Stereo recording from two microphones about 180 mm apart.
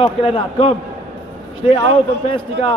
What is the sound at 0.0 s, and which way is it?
Speech, 30° left (ahead or behind).